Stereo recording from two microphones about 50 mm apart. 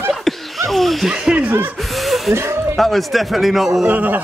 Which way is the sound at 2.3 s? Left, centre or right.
Right.